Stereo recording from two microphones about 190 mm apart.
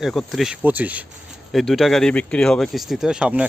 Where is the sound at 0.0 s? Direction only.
Centre (ahead or behind).